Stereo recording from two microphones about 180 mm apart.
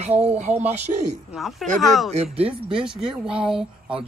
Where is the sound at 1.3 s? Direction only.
Centre (ahead or behind).